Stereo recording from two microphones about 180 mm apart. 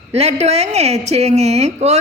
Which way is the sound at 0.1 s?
35° right (ahead or behind).